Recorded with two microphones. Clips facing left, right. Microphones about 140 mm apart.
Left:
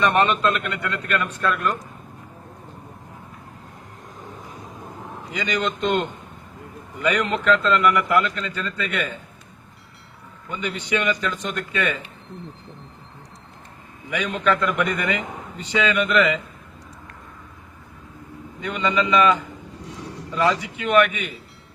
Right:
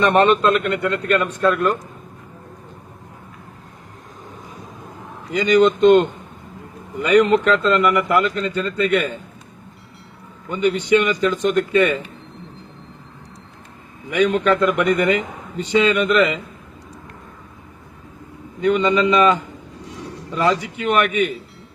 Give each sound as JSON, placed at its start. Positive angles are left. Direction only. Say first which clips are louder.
{"t": 0.0, "sound": "speech", "louder": "right 5 dB", "side_deg": -35}
{"t": 5.3, "sound": "speech", "louder": "right 11 dB", "side_deg": -35}
{"t": 7.0, "sound": "speech", "louder": "right 8 dB", "side_deg": -35}
{"t": 10.7, "sound": "speech", "louder": "right 7 dB", "side_deg": -30}
{"t": 14.2, "sound": "speech", "louder": "right 6 dB", "side_deg": -35}
{"t": 18.6, "sound": "speech", "louder": "right 7 dB", "side_deg": -40}
{"t": 20.4, "sound": "speech", "louder": "right 2 dB", "side_deg": -35}